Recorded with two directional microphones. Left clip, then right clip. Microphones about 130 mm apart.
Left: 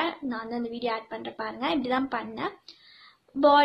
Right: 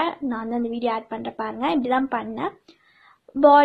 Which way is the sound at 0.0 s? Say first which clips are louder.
Right 5 dB; 45° right (ahead or behind).